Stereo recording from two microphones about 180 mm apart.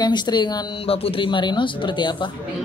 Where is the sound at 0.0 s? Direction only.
25° left (ahead or behind).